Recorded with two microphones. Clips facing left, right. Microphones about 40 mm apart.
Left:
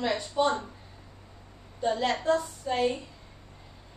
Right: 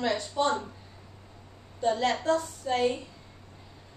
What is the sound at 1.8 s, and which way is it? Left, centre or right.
A woman's voice, centre.